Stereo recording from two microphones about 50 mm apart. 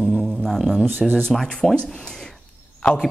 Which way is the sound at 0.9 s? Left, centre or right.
Centre.